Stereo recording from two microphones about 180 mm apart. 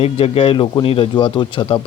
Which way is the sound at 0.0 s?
30° left (ahead or behind).